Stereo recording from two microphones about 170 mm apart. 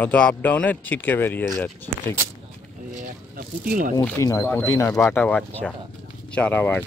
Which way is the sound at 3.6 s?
60° right (ahead or behind).